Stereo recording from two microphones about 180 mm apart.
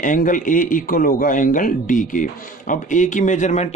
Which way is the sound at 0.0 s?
45° left (ahead or behind).